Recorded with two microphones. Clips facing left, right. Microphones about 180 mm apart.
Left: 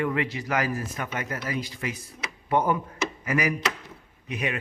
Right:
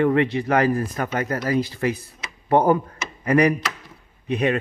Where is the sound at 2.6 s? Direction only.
35° right (ahead or behind).